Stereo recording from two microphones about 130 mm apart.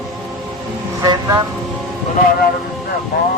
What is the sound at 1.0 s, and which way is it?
Speech, 30° right (ahead or behind).